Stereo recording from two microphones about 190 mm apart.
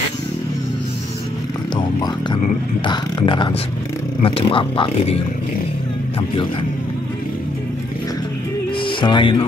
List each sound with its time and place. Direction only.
2.8 s speech: 25° left (ahead or behind)
8.8 s speech: 25° left (ahead or behind)